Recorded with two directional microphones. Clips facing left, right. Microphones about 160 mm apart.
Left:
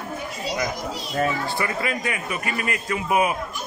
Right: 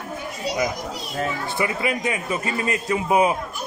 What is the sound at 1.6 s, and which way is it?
A man's voice, 15° right (ahead or behind).